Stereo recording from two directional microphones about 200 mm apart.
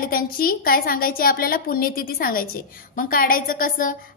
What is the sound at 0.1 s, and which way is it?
A woman's voice, 45° left (ahead or behind).